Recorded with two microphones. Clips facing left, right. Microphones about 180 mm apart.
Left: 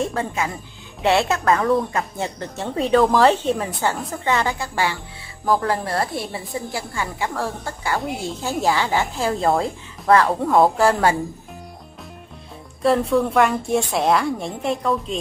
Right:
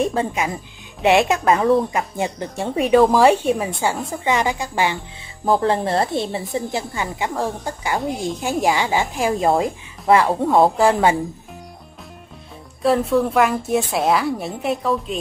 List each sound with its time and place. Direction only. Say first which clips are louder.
0.0 s a woman's voice: right 3 dB; 20° right (ahead or behind)
12.8 s a woman's voice: right 1 dB; centre (ahead or behind)